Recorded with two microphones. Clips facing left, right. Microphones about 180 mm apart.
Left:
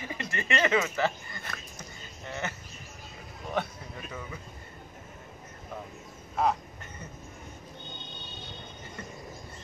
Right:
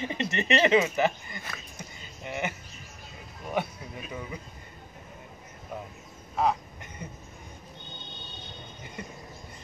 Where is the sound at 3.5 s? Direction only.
10° right (ahead or behind).